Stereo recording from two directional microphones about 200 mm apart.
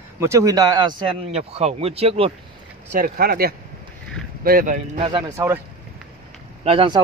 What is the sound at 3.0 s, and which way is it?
Speech, 50° right (ahead or behind).